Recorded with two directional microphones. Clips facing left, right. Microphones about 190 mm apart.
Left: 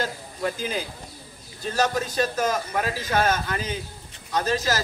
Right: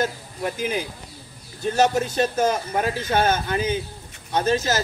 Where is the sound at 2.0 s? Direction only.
25° right (ahead or behind).